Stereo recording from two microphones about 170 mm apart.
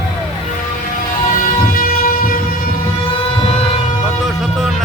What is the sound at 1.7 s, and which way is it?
Vehicle, 55° left (ahead or behind).